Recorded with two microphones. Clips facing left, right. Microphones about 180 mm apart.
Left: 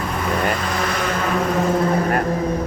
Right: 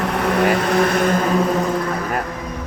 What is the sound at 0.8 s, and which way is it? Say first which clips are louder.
Vehicle: right 5 dB; 45° right (ahead or behind).